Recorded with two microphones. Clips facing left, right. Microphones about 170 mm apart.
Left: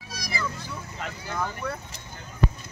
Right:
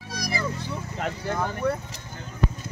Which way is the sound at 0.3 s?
35° right (ahead or behind).